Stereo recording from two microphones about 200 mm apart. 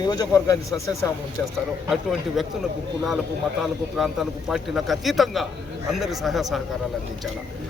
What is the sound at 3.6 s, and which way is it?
A man's voice, centre (ahead or behind).